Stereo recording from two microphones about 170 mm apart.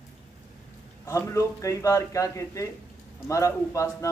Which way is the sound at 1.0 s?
20° left (ahead or behind).